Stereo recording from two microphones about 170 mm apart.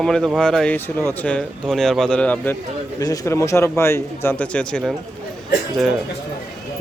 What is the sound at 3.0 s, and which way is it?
A man's voice, 20° left (ahead or behind).